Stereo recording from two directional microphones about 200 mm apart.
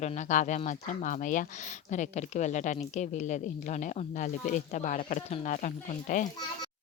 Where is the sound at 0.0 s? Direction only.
35° left (ahead or behind).